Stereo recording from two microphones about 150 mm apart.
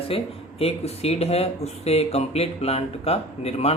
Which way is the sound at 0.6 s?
45° left (ahead or behind).